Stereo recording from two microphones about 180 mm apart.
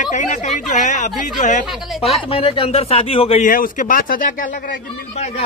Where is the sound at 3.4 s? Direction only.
50° left (ahead or behind).